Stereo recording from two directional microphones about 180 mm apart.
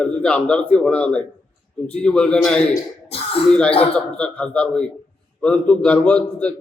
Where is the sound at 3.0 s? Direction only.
35° left (ahead or behind).